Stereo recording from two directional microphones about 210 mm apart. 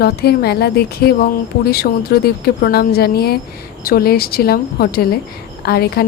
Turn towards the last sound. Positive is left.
turn(degrees=50)  # may be behind; listen again after turning